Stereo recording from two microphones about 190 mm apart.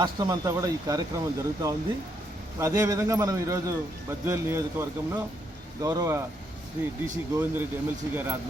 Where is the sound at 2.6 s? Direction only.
15° right (ahead or behind).